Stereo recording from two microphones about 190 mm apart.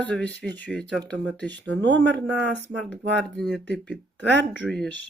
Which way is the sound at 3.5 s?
65° right (ahead or behind).